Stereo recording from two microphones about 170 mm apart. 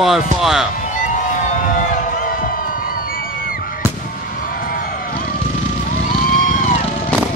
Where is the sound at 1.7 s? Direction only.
55° left (ahead or behind).